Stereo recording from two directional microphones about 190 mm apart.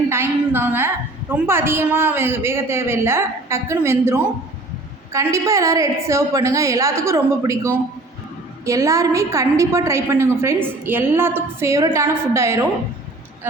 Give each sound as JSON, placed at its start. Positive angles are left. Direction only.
{"t": 0.1, "sound": "a woman's voice", "side_deg": -10}